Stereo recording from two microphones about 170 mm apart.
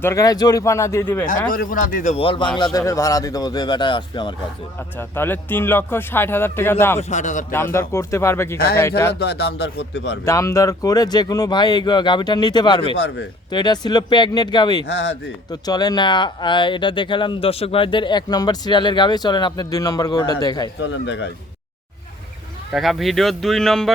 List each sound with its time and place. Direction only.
0.0 s speech: 15° left (ahead or behind)
1.3 s speech: 50° left (ahead or behind)
2.1 s speech: 30° left (ahead or behind)
2.7 s speech: 20° left (ahead or behind)
4.9 s speech: 10° left (ahead or behind)
7.1 s speech: 45° left (ahead or behind)
7.5 s speech: 15° left (ahead or behind)
9.1 s speech: 75° left (ahead or behind)
10.2 s speech: 20° left (ahead or behind)
14.8 s speech: 90° left
15.4 s speech: 25° left (ahead or behind)
20.8 s speech: 90° left
22.7 s speech: centre (ahead or behind)